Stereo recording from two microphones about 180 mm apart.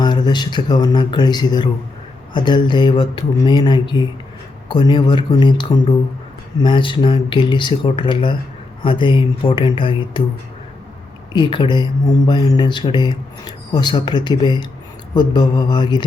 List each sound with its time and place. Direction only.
0.0 s speech: 25° left (ahead or behind)
11.3 s speech: 25° left (ahead or behind)